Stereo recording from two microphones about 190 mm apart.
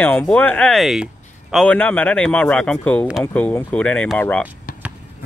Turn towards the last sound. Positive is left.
turn(degrees=5)  # may be behind; listen again after turning